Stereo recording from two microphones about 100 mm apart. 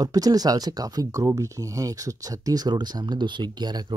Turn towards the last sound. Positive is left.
turn(degrees=-45)  # may be behind; listen again after turning